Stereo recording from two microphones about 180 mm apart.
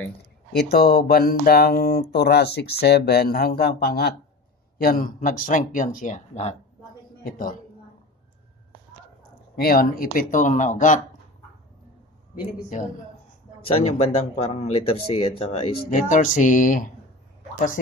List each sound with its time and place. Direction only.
0.5 s speech: 60° left (ahead or behind); by 6.5 s 40° left (ahead or behind)
7.2 s speech: 50° left (ahead or behind)
9.6 s speech: 55° left (ahead or behind)
13.7 s speech: 35° left (ahead or behind)
15.9 s speech: 45° left (ahead or behind)